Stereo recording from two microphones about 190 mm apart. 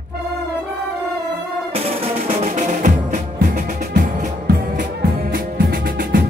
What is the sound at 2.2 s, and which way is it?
Music, 30° right (ahead or behind).